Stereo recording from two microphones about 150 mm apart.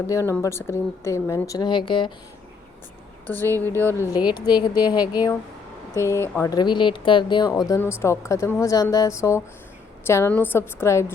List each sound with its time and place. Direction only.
0.1 s a woman's voice: 20° left (ahead or behind)
3.2 s a woman's voice: 15° left (ahead or behind); by 7.6 s 30° left (ahead or behind)
7.8 s a woman's voice: 15° left (ahead or behind)